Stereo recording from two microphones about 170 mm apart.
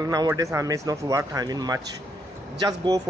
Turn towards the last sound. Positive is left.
turn(degrees=-20)  # may be behind; listen again after turning